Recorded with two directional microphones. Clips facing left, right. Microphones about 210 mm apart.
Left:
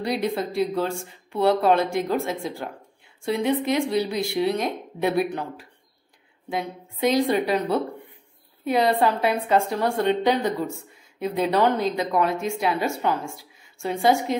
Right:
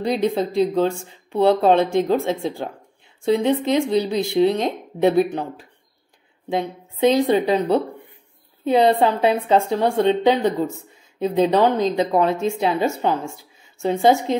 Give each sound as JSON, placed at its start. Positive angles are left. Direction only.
{"t": 0.2, "sound": "speech", "side_deg": -20}
{"t": 6.5, "sound": "speech", "side_deg": -25}